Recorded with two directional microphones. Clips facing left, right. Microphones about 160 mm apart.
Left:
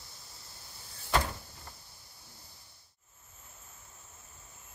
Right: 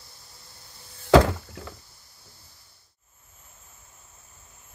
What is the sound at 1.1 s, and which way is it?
Door, 90° right.